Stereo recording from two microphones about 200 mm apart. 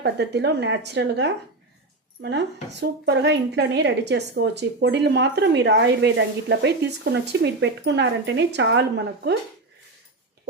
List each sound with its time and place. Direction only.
0.0 s a woman's voice: 60° right (ahead or behind)
2.8 s a woman's voice: 55° right (ahead or behind)